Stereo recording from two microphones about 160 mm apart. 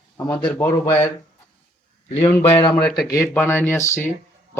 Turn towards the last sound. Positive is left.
turn(degrees=15)  # may be behind; listen again after turning